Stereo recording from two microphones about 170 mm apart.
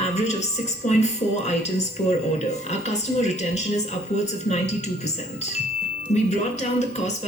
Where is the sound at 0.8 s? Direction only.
40° left (ahead or behind).